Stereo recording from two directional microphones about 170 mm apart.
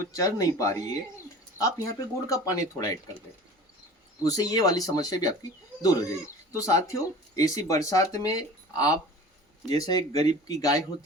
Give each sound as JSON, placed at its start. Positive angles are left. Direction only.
{"t": 0.2, "sound": "speech", "side_deg": 20}
{"t": 4.2, "sound": "speech", "side_deg": 20}